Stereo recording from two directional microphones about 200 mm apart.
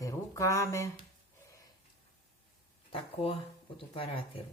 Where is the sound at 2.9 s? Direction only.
25° left (ahead or behind).